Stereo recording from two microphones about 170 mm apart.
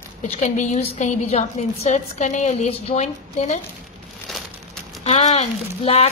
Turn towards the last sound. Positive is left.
turn(degrees=35)  # may be behind; listen again after turning